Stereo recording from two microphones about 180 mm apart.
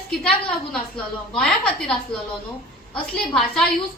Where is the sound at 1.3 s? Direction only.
5° left (ahead or behind).